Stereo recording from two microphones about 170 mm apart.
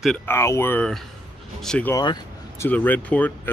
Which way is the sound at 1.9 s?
20° left (ahead or behind).